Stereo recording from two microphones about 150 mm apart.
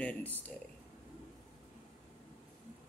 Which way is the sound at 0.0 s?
10° left (ahead or behind).